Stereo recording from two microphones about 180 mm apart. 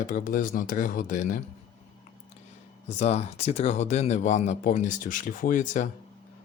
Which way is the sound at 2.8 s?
35° left (ahead or behind).